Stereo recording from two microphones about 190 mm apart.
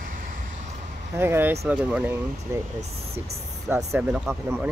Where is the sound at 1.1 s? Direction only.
10° right (ahead or behind).